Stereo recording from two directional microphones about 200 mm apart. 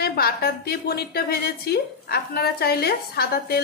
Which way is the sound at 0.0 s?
50° left (ahead or behind).